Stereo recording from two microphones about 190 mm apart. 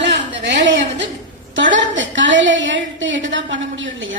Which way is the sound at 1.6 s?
75° right (ahead or behind).